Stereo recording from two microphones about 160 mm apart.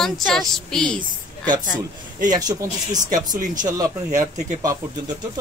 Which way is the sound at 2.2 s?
25° right (ahead or behind).